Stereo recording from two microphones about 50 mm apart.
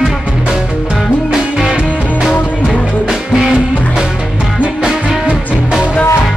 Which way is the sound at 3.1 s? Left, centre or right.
Centre.